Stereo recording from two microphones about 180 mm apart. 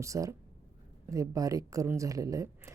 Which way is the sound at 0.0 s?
15° right (ahead or behind).